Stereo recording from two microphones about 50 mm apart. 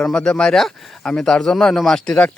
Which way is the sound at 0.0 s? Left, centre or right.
Centre.